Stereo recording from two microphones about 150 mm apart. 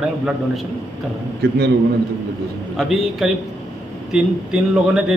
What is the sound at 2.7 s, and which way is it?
A man's voice, centre (ahead or behind).